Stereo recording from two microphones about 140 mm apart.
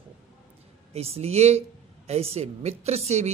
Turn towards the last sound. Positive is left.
turn(degrees=-50)  # may be behind; listen again after turning